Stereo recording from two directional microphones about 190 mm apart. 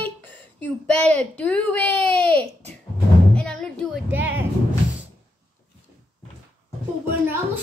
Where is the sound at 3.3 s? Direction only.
5° left (ahead or behind).